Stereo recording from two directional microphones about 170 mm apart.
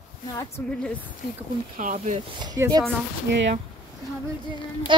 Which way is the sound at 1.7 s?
55° right (ahead or behind).